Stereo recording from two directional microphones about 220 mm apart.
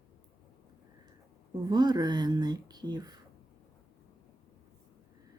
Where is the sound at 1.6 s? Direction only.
20° right (ahead or behind).